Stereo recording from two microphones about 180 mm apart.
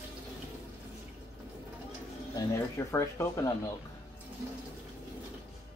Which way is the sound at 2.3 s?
15° left (ahead or behind).